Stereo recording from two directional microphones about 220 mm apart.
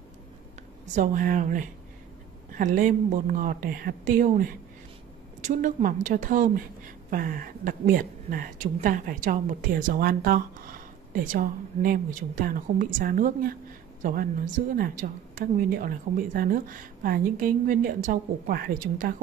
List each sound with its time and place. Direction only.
0.9 s a woman's voice: 35° right (ahead or behind)